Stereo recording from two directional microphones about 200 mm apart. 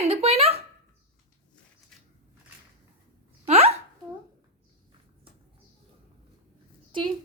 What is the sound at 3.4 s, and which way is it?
Hiccup, 30° right (ahead or behind).